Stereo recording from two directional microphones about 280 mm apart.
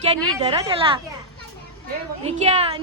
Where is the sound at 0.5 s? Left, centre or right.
Centre.